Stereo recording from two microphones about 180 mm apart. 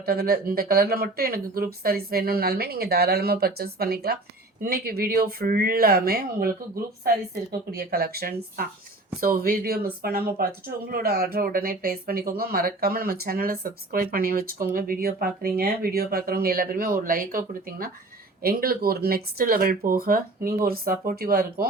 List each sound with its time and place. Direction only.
0.0 s speech: 55° right (ahead or behind)